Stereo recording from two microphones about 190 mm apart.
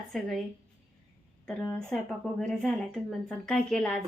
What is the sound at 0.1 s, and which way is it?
Speech, centre (ahead or behind).